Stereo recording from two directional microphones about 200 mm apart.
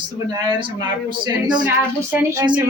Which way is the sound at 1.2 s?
20° right (ahead or behind).